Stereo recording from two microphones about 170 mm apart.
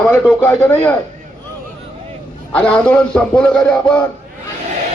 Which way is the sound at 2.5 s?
10° left (ahead or behind).